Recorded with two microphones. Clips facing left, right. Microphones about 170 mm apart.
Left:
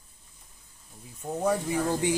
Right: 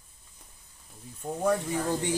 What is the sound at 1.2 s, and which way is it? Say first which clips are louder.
Speech: even; 10° left (ahead or behind).